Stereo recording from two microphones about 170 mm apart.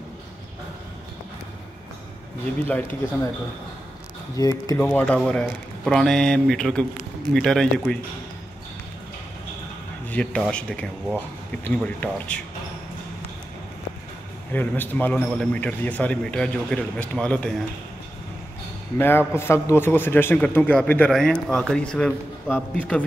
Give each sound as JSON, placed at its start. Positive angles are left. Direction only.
{"t": 4.4, "sound": "speech", "side_deg": 20}
{"t": 4.7, "sound": "speech", "side_deg": 10}
{"t": 10.0, "sound": "a man's voice", "side_deg": 5}
{"t": 14.5, "sound": "a man's voice", "side_deg": 10}
{"t": 18.9, "sound": "a man's voice", "side_deg": 15}